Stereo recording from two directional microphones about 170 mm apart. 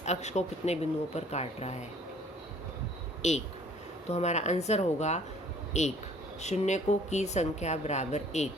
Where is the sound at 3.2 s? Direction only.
40° left (ahead or behind).